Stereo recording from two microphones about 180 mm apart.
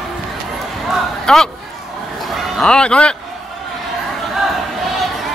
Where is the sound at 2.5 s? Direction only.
5° left (ahead or behind).